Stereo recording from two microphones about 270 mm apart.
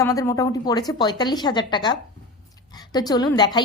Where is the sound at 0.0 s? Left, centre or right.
Centre.